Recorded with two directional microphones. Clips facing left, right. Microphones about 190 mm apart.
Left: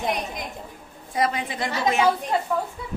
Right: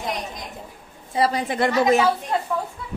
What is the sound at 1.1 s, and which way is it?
Speech, 30° right (ahead or behind).